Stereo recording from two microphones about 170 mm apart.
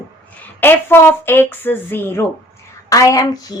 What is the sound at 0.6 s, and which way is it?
A woman's voice, 15° left (ahead or behind).